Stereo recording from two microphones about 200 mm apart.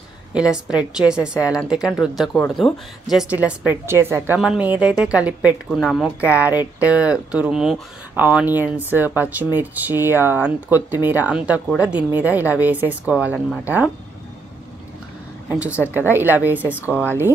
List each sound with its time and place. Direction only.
0.3 s a woman's voice: 5° right (ahead or behind)
15.7 s a woman's voice: 10° left (ahead or behind)
16.1 s speech: 10° right (ahead or behind)